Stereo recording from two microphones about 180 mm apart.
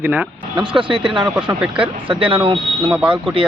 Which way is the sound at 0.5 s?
25° right (ahead or behind).